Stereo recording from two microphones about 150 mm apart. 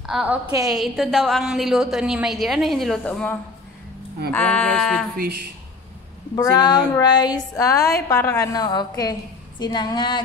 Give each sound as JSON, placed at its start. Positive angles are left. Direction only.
{"t": 0.0, "sound": "a woman's voice", "side_deg": -5}
{"t": 5.1, "sound": "speech", "side_deg": -85}
{"t": 6.3, "sound": "a woman's voice", "side_deg": 25}